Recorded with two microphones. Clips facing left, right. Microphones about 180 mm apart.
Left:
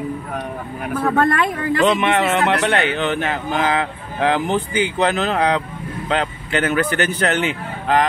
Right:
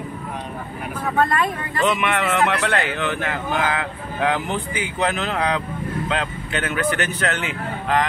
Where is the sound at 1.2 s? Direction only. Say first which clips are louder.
Even; 75° left (ahead or behind).